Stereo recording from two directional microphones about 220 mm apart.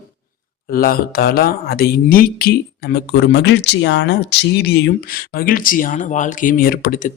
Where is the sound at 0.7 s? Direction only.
40° left (ahead or behind).